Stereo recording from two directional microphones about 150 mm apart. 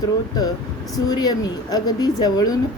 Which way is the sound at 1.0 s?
25° left (ahead or behind).